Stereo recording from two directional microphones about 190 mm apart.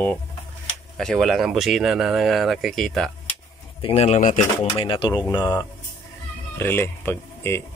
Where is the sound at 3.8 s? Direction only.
30° left (ahead or behind); by 7.7 s 10° left (ahead or behind).